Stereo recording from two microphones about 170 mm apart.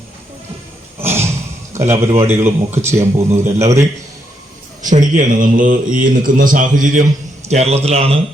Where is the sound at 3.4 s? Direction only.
40° right (ahead or behind).